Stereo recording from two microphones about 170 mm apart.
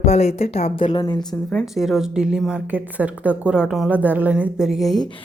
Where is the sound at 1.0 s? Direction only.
25° left (ahead or behind).